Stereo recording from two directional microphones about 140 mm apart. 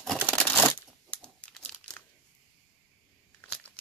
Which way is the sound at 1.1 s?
10° left (ahead or behind).